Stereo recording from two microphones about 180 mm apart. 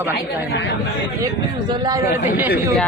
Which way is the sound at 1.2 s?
25° right (ahead or behind).